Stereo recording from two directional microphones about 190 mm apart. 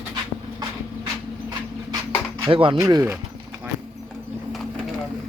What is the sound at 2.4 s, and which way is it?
Speech, 30° right (ahead or behind).